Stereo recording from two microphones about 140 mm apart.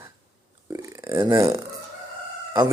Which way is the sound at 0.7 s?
25° right (ahead or behind).